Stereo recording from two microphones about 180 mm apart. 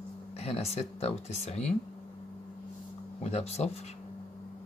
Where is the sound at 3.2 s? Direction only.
35° left (ahead or behind).